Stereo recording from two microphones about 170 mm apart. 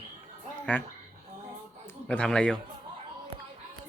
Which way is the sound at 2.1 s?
5° left (ahead or behind).